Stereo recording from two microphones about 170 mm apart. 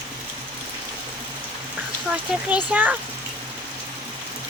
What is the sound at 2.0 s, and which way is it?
Speech, 5° right (ahead or behind).